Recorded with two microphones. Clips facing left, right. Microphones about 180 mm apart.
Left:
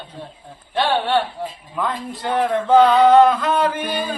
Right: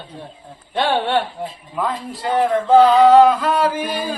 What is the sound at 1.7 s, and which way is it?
Male singing, 5° right (ahead or behind).